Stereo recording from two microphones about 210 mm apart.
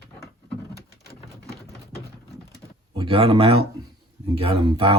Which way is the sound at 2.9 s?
25° right (ahead or behind).